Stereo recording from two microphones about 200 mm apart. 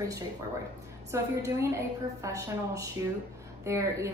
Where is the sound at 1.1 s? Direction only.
15° right (ahead or behind).